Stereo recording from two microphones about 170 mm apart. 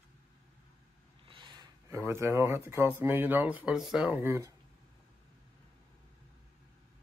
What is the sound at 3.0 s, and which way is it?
Speech, 10° right (ahead or behind).